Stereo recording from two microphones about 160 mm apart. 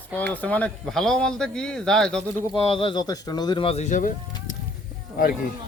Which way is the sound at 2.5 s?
35° left (ahead or behind).